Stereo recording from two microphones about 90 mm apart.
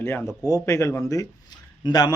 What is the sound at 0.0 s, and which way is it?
A man's voice, 25° left (ahead or behind).